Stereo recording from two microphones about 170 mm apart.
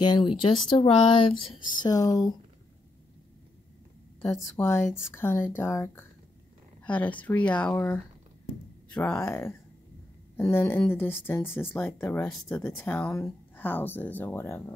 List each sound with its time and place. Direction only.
0.0 s speech: 25° left (ahead or behind)
1.8 s speech: 20° left (ahead or behind)
4.4 s speech: 15° left (ahead or behind)